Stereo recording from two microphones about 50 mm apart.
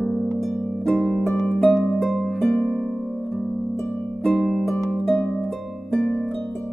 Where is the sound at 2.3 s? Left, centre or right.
Centre.